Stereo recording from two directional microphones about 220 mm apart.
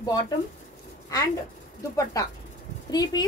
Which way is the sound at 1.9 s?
15° left (ahead or behind).